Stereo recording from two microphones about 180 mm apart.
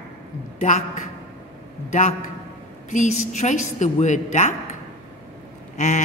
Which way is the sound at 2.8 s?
45° left (ahead or behind).